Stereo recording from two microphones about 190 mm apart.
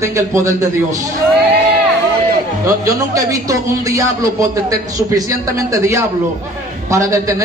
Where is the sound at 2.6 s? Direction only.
20° right (ahead or behind).